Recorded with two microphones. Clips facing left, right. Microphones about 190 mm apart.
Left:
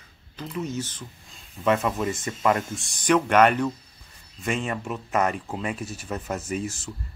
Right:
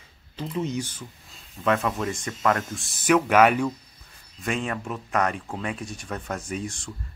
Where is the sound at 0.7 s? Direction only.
10° right (ahead or behind).